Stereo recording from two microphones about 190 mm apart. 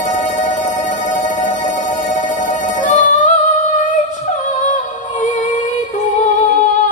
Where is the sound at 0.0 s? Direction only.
40° left (ahead or behind).